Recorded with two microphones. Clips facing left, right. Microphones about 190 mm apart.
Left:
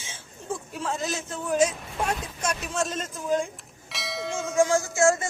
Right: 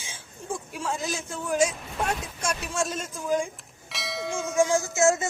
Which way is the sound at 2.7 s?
5° right (ahead or behind).